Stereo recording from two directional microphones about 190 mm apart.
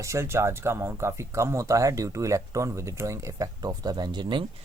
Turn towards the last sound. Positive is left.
turn(degrees=-25)  # may be behind; listen again after turning